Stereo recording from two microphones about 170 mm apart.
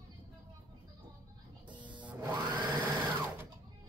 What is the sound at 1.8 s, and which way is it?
Printer, 30° right (ahead or behind).